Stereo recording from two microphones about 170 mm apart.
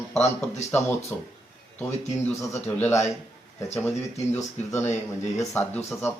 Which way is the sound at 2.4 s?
15° left (ahead or behind).